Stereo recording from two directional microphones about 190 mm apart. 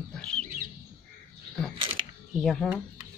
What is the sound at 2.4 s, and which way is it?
Speech, 5° left (ahead or behind).